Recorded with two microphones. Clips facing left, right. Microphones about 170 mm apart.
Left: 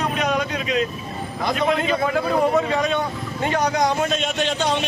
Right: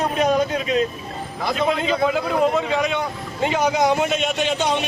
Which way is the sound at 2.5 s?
Centre (ahead or behind).